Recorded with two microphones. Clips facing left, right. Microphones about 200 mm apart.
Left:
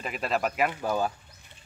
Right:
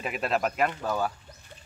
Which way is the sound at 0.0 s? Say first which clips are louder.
Right 1 dB; centre (ahead or behind).